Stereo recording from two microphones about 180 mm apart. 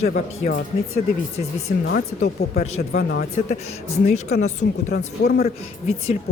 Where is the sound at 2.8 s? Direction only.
60° left (ahead or behind).